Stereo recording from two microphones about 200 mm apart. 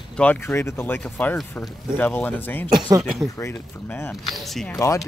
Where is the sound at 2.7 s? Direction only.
20° right (ahead or behind).